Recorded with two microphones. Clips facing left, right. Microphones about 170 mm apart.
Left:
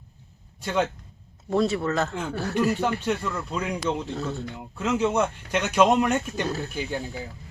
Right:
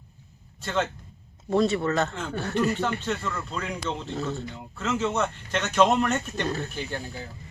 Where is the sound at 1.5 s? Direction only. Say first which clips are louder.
Even; centre (ahead or behind).